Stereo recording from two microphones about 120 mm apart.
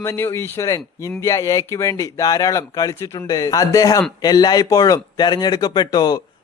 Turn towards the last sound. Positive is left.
turn(degrees=35)  # may be behind; listen again after turning